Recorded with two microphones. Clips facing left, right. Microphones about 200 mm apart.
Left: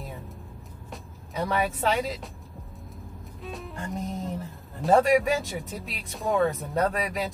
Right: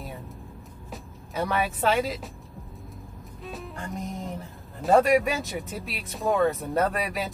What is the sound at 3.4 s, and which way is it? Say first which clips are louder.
Music: even; centre (ahead or behind).